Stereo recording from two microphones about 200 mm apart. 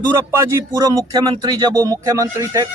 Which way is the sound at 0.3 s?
15° right (ahead or behind).